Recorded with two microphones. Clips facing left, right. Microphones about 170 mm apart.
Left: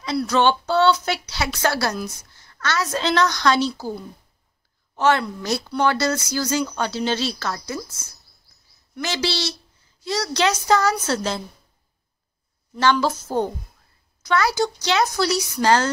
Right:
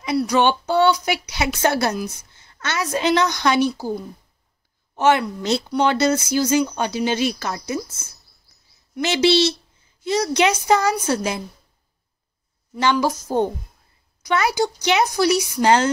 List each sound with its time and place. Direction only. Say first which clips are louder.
0.0 s a woman's voice: right 1 dB; 15° right (ahead or behind)
12.8 s speech: even; 15° right (ahead or behind)